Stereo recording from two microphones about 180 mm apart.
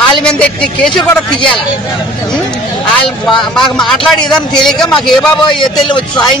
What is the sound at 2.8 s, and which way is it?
Speech, centre (ahead or behind).